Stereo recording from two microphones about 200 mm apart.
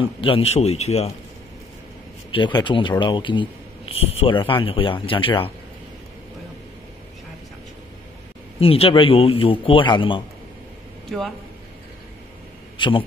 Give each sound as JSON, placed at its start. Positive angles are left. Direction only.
{"t": 0.2, "sound": "a man's voice", "side_deg": 30}
{"t": 2.3, "sound": "speech", "side_deg": 25}
{"t": 8.5, "sound": "speech", "side_deg": 30}
{"t": 11.1, "sound": "speech", "side_deg": 0}
{"t": 12.7, "sound": "a man's voice", "side_deg": 25}